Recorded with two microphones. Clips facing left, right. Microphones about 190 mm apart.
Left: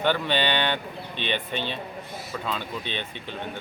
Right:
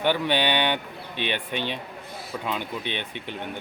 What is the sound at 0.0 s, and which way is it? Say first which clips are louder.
Speech: right 1 dB; 15° right (ahead or behind).